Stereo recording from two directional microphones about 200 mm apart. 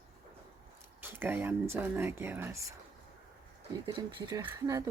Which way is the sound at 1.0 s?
10° right (ahead or behind).